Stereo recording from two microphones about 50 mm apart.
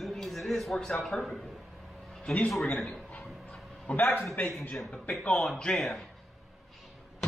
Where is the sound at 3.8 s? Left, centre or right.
Left.